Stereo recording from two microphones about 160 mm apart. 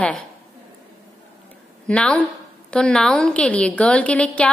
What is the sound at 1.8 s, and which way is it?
A woman's voice, 5° left (ahead or behind).